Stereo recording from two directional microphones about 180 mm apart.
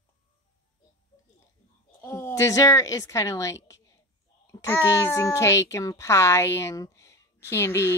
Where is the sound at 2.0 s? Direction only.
10° left (ahead or behind).